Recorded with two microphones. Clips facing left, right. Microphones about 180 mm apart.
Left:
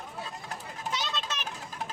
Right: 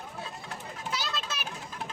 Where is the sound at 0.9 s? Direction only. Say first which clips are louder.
Even; 5° right (ahead or behind).